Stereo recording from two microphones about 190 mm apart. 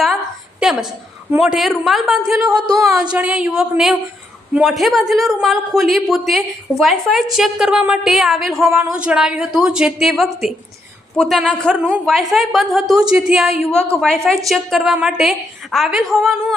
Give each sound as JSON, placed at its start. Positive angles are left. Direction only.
{"t": 0.6, "sound": "a sound", "side_deg": 0}
{"t": 1.3, "sound": "speech", "side_deg": -5}
{"t": 2.5, "sound": "speech", "side_deg": -20}
{"t": 2.8, "sound": "speech", "side_deg": -5}